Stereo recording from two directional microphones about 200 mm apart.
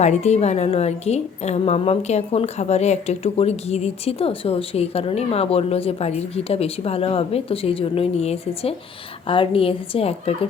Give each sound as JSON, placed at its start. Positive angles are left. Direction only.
{"t": 0.0, "sound": "a woman's voice", "side_deg": 35}